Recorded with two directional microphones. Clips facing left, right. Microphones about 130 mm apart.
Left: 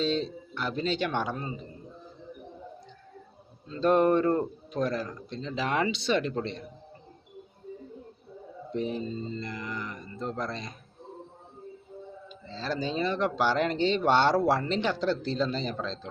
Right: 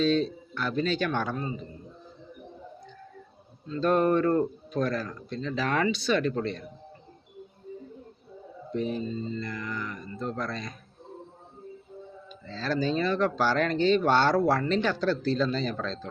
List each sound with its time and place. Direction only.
0.0 s speech: 25° left (ahead or behind)
3.7 s speech: 25° left (ahead or behind)
8.7 s speech: 25° left (ahead or behind)
12.5 s speech: 20° left (ahead or behind)